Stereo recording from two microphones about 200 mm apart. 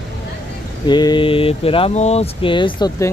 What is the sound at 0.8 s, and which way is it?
Speech, 20° left (ahead or behind).